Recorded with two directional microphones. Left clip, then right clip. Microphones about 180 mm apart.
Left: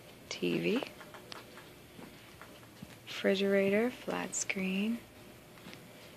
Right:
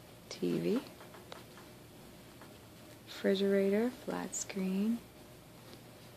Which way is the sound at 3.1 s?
15° right (ahead or behind).